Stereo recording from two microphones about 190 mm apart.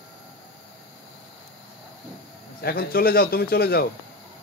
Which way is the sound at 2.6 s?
55° left (ahead or behind).